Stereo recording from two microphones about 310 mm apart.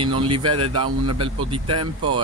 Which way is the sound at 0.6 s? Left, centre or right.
Right.